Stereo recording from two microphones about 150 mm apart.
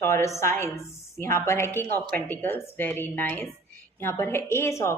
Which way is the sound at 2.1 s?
15° left (ahead or behind).